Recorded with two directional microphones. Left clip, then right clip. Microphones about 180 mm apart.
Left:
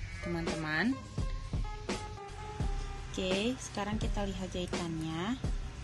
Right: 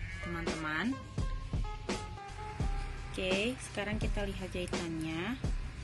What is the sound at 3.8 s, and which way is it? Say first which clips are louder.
Speech: even; 40° left (ahead or behind).